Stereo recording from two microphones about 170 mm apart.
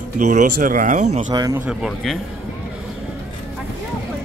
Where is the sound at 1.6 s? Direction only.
Centre (ahead or behind).